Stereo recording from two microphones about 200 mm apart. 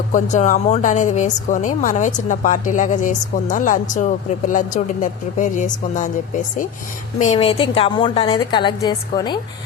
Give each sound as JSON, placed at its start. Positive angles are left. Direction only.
{"t": 0.1, "sound": "a woman's voice", "side_deg": 40}